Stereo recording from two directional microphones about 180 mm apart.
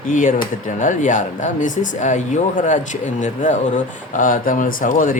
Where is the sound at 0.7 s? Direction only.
45° left (ahead or behind).